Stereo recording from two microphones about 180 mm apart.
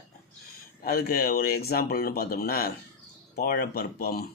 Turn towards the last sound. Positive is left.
turn(degrees=55)  # may be behind; listen again after turning